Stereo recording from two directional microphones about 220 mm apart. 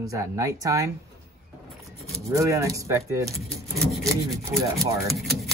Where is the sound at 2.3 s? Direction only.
15° right (ahead or behind).